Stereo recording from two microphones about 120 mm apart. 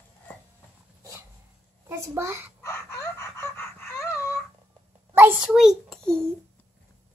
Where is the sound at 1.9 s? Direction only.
25° right (ahead or behind).